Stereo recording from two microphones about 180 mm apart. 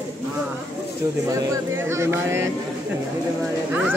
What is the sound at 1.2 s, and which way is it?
Speech, 15° right (ahead or behind).